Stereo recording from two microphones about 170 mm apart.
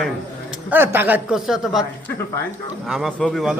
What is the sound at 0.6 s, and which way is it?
A man's voice, 10° right (ahead or behind).